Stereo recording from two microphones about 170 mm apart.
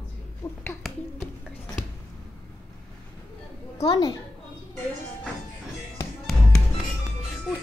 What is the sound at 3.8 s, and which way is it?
Speech, 25° left (ahead or behind).